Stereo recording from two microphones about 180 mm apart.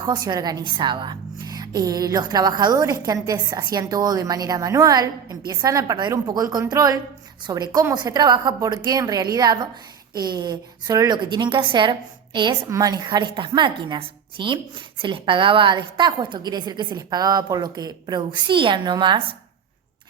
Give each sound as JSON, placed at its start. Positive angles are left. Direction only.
{"t": 0.0, "sound": "a woman's voice", "side_deg": -20}